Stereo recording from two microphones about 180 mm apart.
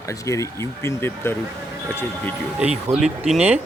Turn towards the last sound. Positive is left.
turn(degrees=-5)  # may be behind; listen again after turning